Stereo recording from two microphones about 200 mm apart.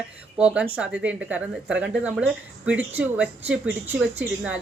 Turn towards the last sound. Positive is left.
turn(degrees=-5)  # may be behind; listen again after turning